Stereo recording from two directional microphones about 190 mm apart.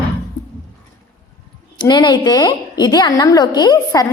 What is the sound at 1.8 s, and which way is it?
A woman's voice, 25° left (ahead or behind).